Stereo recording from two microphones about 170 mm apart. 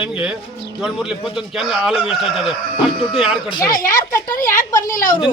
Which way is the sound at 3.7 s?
55° left (ahead or behind).